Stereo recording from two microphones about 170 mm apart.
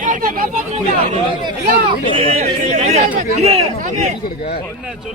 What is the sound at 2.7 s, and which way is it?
Speech, 40° right (ahead or behind).